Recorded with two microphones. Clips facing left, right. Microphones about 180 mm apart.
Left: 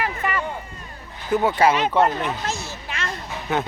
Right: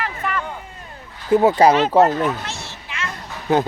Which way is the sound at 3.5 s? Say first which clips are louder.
Right 6 dB; 35° right (ahead or behind).